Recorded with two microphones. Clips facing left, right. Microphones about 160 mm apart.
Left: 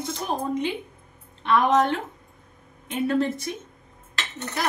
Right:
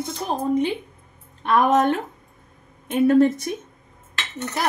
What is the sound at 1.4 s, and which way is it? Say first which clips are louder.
A woman's voice: right 2 dB; 45° right (ahead or behind).